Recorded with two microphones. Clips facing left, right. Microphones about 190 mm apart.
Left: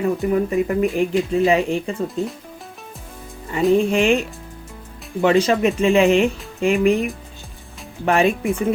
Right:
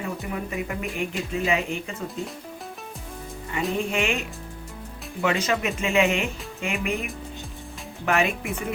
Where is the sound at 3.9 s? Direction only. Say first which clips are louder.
Left 9 dB; 35° left (ahead or behind).